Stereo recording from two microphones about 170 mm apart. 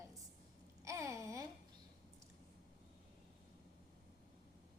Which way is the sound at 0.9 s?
15° right (ahead or behind).